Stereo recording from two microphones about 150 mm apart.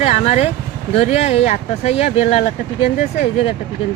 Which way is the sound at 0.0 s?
45° left (ahead or behind).